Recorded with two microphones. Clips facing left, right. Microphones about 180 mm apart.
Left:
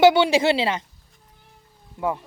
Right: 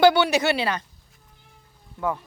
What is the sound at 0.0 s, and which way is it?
Speech, 25° left (ahead or behind).